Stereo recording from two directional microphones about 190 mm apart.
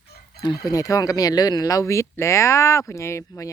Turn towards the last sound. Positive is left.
turn(degrees=15)  # may be behind; listen again after turning